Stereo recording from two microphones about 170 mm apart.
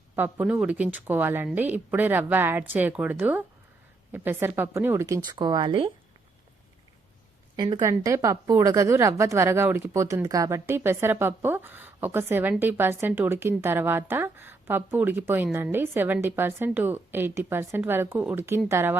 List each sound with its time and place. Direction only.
0.2 s a woman's voice: 10° right (ahead or behind); by 5.9 s 30° right (ahead or behind)
7.5 s a woman's voice: 25° right (ahead or behind)